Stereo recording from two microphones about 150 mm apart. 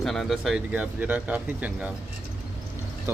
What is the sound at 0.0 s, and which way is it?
Speech, centre (ahead or behind).